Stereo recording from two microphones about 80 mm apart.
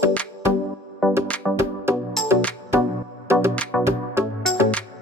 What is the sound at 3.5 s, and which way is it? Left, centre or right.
Music, centre.